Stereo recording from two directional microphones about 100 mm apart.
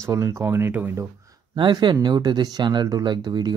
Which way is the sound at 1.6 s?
50° right (ahead or behind).